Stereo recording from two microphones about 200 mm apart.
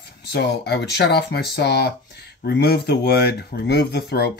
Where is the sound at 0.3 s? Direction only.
55° left (ahead or behind).